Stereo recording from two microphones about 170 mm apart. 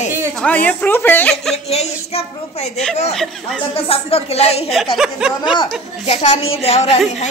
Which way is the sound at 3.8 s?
35° left (ahead or behind).